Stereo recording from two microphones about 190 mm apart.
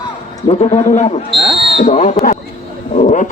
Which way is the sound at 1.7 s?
30° left (ahead or behind).